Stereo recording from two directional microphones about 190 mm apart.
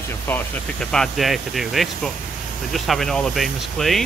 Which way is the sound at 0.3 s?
5° left (ahead or behind).